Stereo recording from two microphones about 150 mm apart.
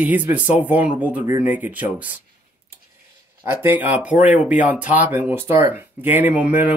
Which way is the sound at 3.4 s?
15° right (ahead or behind).